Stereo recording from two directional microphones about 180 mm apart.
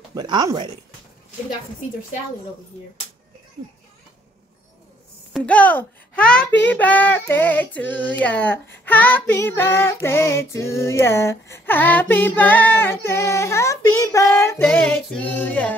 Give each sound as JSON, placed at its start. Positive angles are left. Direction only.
{"t": 0.1, "sound": "speech", "side_deg": -25}
{"t": 5.3, "sound": "child singing", "side_deg": 5}